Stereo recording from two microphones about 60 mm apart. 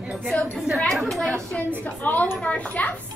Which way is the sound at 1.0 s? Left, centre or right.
Centre.